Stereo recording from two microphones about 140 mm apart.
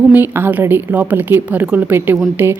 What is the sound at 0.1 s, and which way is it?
A woman's voice, 15° right (ahead or behind).